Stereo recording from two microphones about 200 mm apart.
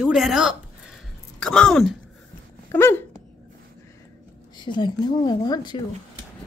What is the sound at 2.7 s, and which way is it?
Speech, 10° left (ahead or behind).